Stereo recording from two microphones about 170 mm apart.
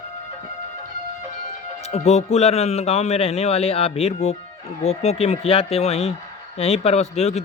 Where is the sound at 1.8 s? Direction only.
40° left (ahead or behind).